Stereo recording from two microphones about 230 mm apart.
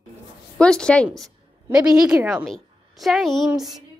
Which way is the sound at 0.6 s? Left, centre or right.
Centre.